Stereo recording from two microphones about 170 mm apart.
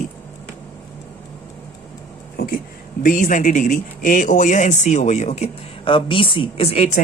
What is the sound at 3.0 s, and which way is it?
Speech, 50° left (ahead or behind).